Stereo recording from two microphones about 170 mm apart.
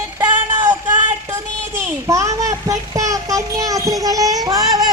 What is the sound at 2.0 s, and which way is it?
Child singing, 20° right (ahead or behind).